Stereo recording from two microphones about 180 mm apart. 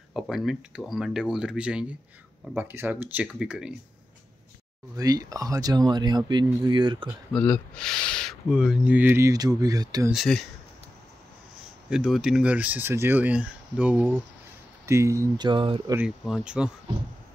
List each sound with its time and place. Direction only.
0.1 s speech: centre (ahead or behind)
4.9 s speech: 20° right (ahead or behind)
7.3 s speech: 5° left (ahead or behind); by 10.1 s 20° right (ahead or behind)
10.1 s speech: centre (ahead or behind)
11.9 s speech: centre (ahead or behind); by 16.0 s 25° right (ahead or behind)
16.0 s speech: 5° right (ahead or behind)